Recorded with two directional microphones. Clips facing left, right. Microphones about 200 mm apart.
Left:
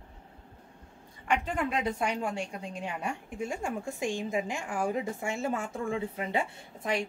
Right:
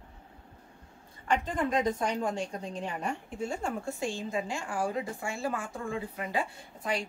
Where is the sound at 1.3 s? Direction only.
40° right (ahead or behind).